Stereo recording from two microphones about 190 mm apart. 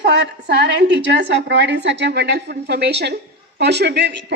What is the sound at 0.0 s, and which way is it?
A woman's voice, 60° right (ahead or behind).